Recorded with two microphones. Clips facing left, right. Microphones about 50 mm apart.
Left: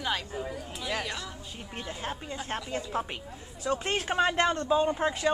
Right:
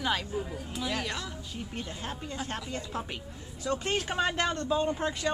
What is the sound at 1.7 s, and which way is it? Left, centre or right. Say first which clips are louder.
A man's voice: left 4 dB; centre.